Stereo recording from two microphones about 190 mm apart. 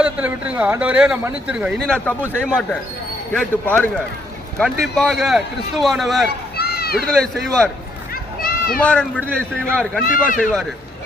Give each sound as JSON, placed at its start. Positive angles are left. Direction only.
{"t": 0.0, "sound": "a man's voice", "side_deg": -5}
{"t": 4.9, "sound": "a man's voice", "side_deg": 0}
{"t": 6.6, "sound": "a sound", "side_deg": 55}
{"t": 7.1, "sound": "a man's voice", "side_deg": 5}
{"t": 8.1, "sound": "run", "side_deg": 50}
{"t": 8.8, "sound": "a man's voice", "side_deg": 5}
{"t": 10.1, "sound": "speech", "side_deg": 45}